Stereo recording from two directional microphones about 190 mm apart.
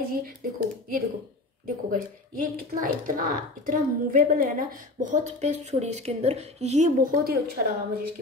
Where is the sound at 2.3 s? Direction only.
45° right (ahead or behind).